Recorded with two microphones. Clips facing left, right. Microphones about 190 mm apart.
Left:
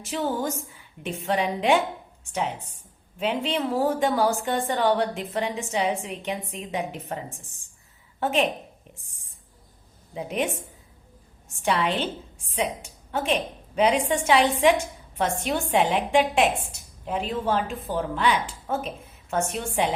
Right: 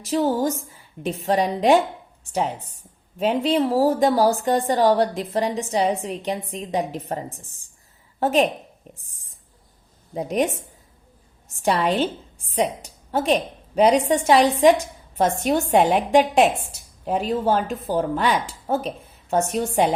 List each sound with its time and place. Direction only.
0.0 s a woman's voice: 40° right (ahead or behind)
10.2 s a woman's voice: 40° right (ahead or behind)
11.5 s a woman's voice: 40° right (ahead or behind)